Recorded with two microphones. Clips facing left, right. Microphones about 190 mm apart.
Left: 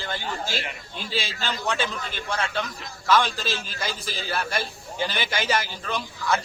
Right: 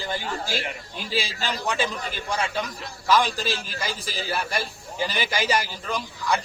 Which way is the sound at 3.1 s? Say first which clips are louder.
Even; centre (ahead or behind).